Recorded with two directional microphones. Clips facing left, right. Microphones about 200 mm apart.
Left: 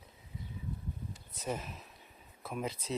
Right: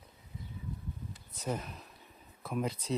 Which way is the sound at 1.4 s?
5° left (ahead or behind).